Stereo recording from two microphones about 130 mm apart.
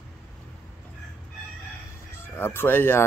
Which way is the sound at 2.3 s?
15° left (ahead or behind).